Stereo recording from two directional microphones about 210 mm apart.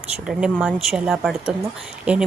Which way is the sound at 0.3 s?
5° right (ahead or behind).